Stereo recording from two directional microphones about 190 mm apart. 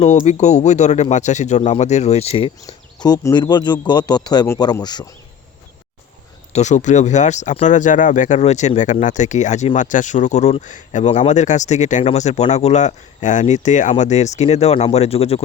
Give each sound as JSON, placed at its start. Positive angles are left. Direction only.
{"t": 0.0, "sound": "speech", "side_deg": 35}
{"t": 6.5, "sound": "speech", "side_deg": 40}